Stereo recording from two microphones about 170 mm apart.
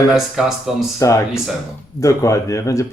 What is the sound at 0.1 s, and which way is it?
Speech, centre (ahead or behind).